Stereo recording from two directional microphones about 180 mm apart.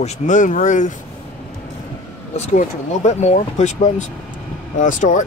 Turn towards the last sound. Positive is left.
turn(degrees=45)  # may be behind; listen again after turning